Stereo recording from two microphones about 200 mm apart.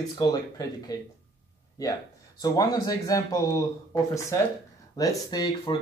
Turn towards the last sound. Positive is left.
turn(degrees=20)  # may be behind; listen again after turning